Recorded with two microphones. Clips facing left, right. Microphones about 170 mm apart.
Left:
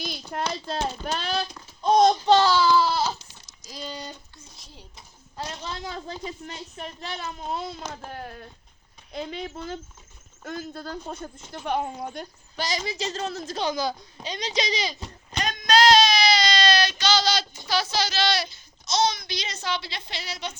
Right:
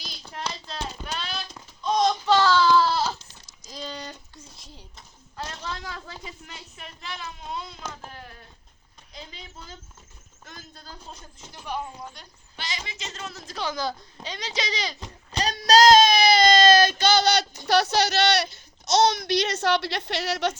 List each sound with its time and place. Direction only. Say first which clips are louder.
0.3 s a child's voice: left 4 dB; 50° left (ahead or behind)
1.8 s a sound: left 5 dB; 50° left (ahead or behind)
2.2 s speech: left 2 dB; 25° left (ahead or behind)
2.5 s a sound: right 1 dB; 5° left (ahead or behind)
4.9 s speech: left 1 dB; 15° left (ahead or behind)
6.1 s speech: left 6 dB; 35° left (ahead or behind); by 14.9 s 15° left (ahead or behind)
15.3 s child singing: right 3 dB; 35° right (ahead or behind); by 17.2 s 55° right (ahead or behind)
17.7 s a child's voice: right 5 dB; 65° right (ahead or behind)